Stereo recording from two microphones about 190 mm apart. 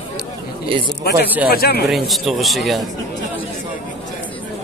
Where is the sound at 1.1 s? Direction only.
55° left (ahead or behind).